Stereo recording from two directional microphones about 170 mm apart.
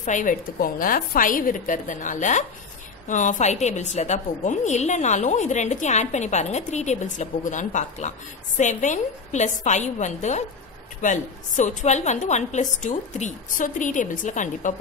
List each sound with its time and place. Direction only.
0.0 s a woman's voice: 50° left (ahead or behind)